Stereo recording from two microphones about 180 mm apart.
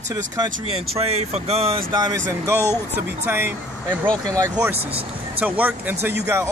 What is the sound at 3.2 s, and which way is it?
Speech, 10° right (ahead or behind).